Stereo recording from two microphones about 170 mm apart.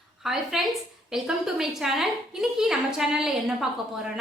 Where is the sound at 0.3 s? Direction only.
Centre (ahead or behind).